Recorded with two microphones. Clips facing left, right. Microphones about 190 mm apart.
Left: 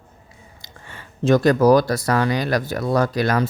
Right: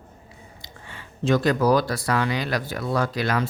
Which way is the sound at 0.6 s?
45° left (ahead or behind).